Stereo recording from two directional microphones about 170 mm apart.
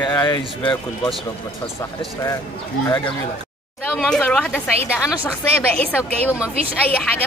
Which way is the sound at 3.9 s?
5° left (ahead or behind).